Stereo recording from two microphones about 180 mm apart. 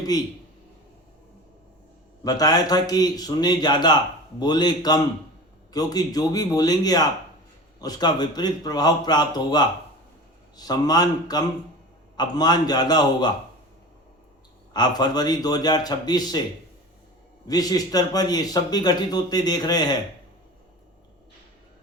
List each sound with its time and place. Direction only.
0.1 s a man's voice: 20° left (ahead or behind)
2.2 s a man's voice: 20° left (ahead or behind)
14.7 s a man's voice: 25° left (ahead or behind)
17.5 s a man's voice: 20° left (ahead or behind)